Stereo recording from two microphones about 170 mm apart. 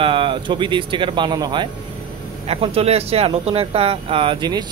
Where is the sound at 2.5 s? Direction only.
35° right (ahead or behind).